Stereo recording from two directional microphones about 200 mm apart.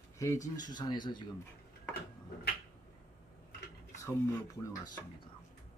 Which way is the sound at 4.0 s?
15° left (ahead or behind).